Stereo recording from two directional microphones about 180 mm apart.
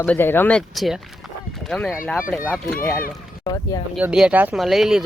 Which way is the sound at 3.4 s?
20° left (ahead or behind).